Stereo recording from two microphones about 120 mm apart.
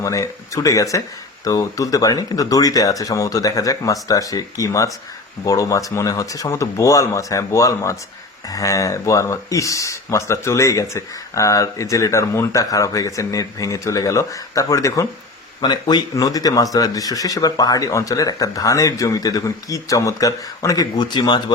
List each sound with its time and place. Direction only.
0.0 s speech: 25° left (ahead or behind)